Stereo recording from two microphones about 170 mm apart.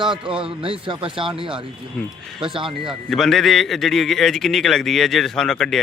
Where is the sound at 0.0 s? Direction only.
30° right (ahead or behind).